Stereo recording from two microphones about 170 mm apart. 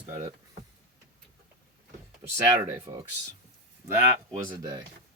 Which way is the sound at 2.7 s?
25° right (ahead or behind).